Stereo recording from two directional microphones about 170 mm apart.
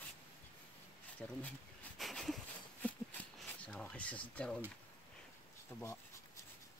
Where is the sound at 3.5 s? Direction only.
5° left (ahead or behind).